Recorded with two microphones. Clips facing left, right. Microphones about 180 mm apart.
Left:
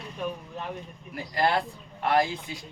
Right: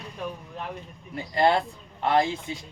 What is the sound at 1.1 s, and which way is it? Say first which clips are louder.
Speech: right 3 dB; 25° right (ahead or behind).